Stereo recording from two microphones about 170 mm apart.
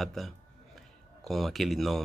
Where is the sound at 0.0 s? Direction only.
Centre (ahead or behind).